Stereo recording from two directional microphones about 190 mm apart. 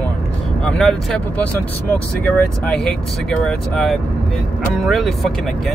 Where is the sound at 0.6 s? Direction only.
5° left (ahead or behind).